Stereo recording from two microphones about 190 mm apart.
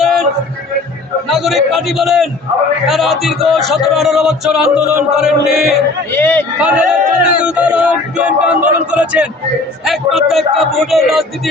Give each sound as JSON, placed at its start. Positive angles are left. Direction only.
{"t": 0.0, "sound": "a sound", "side_deg": 0}
{"t": 1.3, "sound": "music", "side_deg": 0}
{"t": 6.1, "sound": "a man's voice", "side_deg": 10}
{"t": 6.6, "sound": "music", "side_deg": -5}
{"t": 7.0, "sound": "speech", "side_deg": -40}
{"t": 7.3, "sound": "music", "side_deg": -5}